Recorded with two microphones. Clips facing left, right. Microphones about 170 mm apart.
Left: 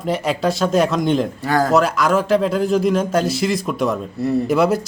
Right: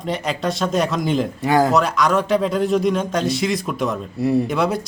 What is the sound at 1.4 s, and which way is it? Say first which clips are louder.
Speech: right 2 dB; 20° right (ahead or behind).